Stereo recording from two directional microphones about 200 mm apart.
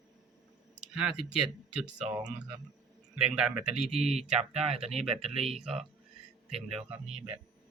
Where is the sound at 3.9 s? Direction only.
35° right (ahead or behind).